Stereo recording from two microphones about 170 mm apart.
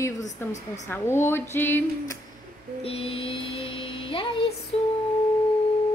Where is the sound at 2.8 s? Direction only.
35° left (ahead or behind).